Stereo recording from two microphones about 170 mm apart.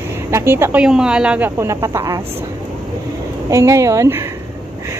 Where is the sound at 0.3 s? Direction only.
15° right (ahead or behind).